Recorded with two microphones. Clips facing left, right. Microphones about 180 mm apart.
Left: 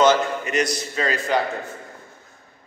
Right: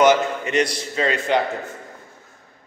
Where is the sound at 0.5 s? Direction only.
25° right (ahead or behind).